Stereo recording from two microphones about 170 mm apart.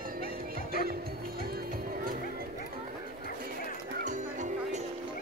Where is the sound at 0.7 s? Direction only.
60° right (ahead or behind).